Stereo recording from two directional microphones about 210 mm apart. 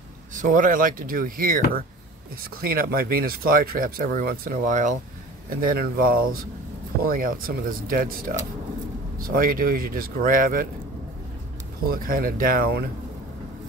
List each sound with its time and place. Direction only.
0.3 s speech: 40° right (ahead or behind)
11.9 s speech: 40° right (ahead or behind)